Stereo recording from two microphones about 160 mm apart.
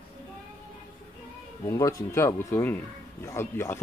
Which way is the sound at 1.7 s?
20° left (ahead or behind).